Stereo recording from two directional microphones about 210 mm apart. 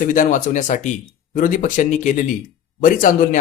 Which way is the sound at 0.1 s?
40° left (ahead or behind).